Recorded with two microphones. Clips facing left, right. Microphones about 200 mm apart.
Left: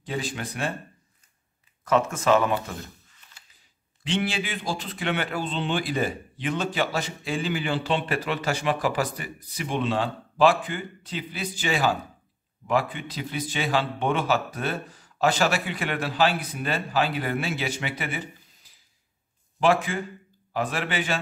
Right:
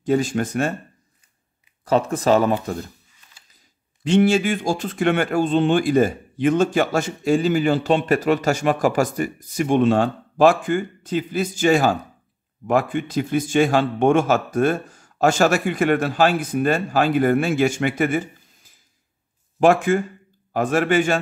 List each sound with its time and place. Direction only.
0.0 s speech: 45° right (ahead or behind)
1.9 s speech: 35° right (ahead or behind)
4.0 s speech: 45° right (ahead or behind)